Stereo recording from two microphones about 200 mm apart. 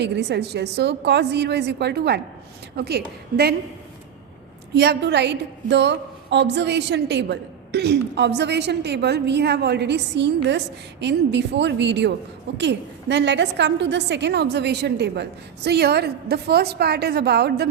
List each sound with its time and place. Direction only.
0.0 s a woman's voice: 60° right (ahead or behind)
4.7 s a woman's voice: 55° right (ahead or behind)